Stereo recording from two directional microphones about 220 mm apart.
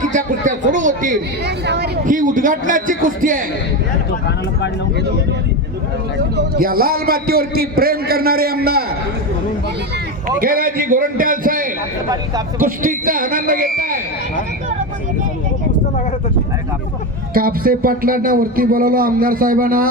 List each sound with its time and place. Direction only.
0.0 s speech: 35° right (ahead or behind)
6.1 s a man's voice: 50° right (ahead or behind)
10.2 s speech: 40° right (ahead or behind)
17.3 s speech: 40° right (ahead or behind)